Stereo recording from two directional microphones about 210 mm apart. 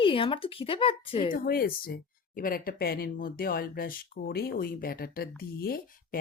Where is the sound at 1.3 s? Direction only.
45° left (ahead or behind).